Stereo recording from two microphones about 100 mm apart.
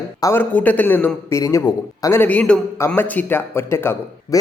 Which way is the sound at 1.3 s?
35° left (ahead or behind).